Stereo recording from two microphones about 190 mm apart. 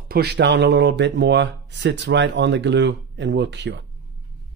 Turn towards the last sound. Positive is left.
turn(degrees=-65)  # may be behind; listen again after turning